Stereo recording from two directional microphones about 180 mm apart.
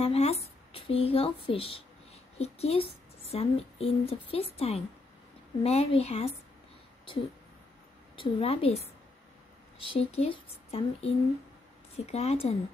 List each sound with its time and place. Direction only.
0.0 s speech: 35° left (ahead or behind)
8.2 s speech: 30° left (ahead or behind)
9.9 s speech: 35° left (ahead or behind)